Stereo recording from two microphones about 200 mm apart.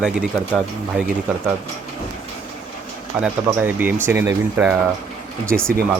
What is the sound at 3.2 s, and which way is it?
Speech, 10° right (ahead or behind).